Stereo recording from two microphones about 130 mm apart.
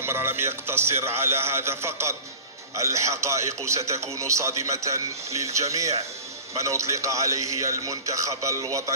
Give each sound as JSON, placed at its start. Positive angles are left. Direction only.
{"t": 0.0, "sound": "a man's voice", "side_deg": -20}